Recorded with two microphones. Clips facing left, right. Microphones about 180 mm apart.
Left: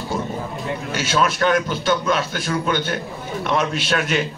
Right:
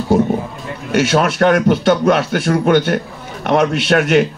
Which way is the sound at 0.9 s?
70° right (ahead or behind).